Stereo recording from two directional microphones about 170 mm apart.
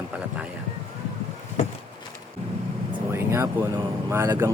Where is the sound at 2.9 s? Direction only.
15° right (ahead or behind).